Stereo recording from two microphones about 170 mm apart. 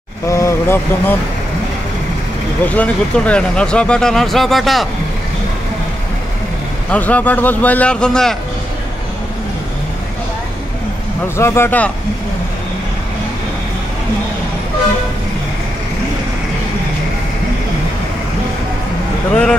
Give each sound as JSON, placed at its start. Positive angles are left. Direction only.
{"t": 0.3, "sound": "a man's voice", "side_deg": 15}
{"t": 2.6, "sound": "speech", "side_deg": 10}
{"t": 6.9, "sound": "a man's voice", "side_deg": 10}
{"t": 11.3, "sound": "a man's voice", "side_deg": 15}